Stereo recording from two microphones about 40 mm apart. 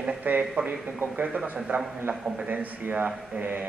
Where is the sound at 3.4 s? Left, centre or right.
Right.